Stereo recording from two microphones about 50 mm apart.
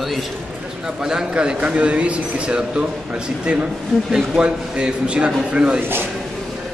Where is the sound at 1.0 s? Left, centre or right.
Centre.